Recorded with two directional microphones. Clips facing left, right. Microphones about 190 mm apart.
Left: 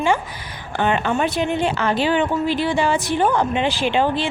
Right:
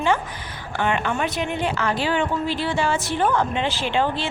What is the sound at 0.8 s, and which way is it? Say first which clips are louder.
A woman's voice: left 4 dB; 30° left (ahead or behind).